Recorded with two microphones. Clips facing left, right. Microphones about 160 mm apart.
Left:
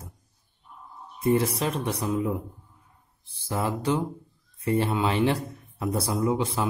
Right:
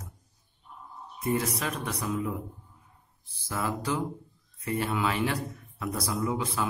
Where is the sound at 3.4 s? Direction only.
30° left (ahead or behind).